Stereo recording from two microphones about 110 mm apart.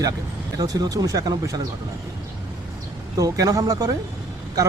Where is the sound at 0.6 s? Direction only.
35° right (ahead or behind).